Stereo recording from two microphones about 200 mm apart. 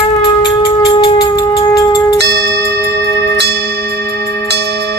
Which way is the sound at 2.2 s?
55° right (ahead or behind).